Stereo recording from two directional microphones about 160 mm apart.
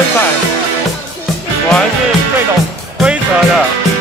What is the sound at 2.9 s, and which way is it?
Music, 5° right (ahead or behind).